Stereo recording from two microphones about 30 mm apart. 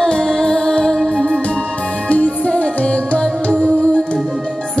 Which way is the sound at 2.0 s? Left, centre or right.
Left.